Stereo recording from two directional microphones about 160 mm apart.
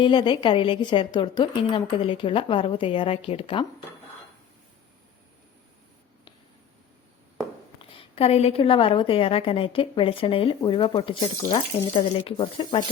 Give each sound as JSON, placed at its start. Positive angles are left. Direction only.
{"t": 0.0, "sound": "a woman's voice", "side_deg": 30}
{"t": 7.8, "sound": "a woman's voice", "side_deg": 35}